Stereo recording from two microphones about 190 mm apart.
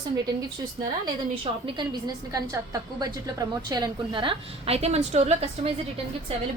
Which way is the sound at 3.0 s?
20° right (ahead or behind).